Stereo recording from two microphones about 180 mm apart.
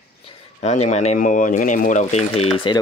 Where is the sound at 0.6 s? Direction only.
40° left (ahead or behind).